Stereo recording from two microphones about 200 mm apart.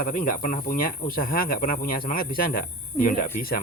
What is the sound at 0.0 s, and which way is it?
Speech, 40° left (ahead or behind).